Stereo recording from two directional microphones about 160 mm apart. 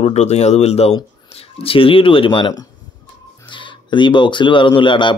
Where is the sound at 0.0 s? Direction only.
45° left (ahead or behind).